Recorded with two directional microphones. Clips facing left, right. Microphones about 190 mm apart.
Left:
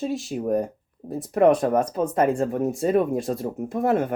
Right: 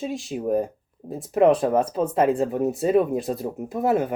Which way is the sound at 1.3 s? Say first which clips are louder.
Even; 30° right (ahead or behind).